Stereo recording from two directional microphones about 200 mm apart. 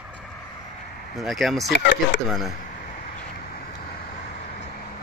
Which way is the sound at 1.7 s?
60° left (ahead or behind).